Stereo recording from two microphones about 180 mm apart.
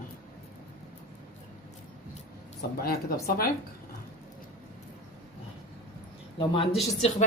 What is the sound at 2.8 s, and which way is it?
Speech, 55° left (ahead or behind).